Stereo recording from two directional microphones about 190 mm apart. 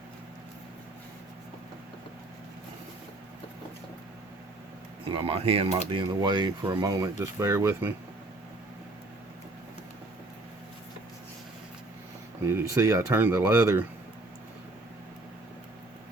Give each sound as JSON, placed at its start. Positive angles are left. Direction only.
{"t": 5.0, "sound": "speech", "side_deg": -30}
{"t": 12.4, "sound": "speech", "side_deg": -15}